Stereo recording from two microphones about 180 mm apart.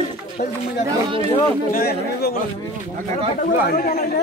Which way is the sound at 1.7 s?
60° left (ahead or behind).